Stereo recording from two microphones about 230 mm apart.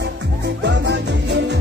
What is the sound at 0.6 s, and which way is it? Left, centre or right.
Music, right.